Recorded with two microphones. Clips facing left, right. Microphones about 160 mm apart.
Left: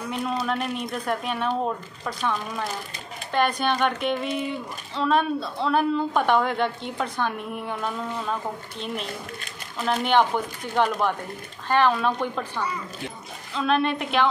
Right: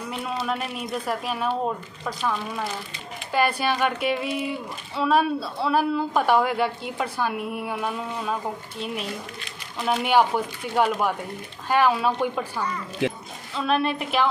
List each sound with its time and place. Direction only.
0.1 s a woman's voice: 5° right (ahead or behind)
13.0 s speech: 90° right
13.6 s speech: 5° right (ahead or behind)